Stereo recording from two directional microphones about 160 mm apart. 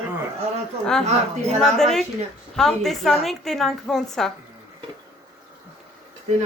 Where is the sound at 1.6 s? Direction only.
Centre (ahead or behind).